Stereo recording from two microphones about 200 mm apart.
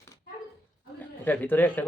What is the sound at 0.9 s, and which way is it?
Speech, 10° left (ahead or behind).